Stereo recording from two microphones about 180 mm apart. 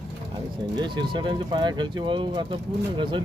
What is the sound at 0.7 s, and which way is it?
Speech, 25° right (ahead or behind).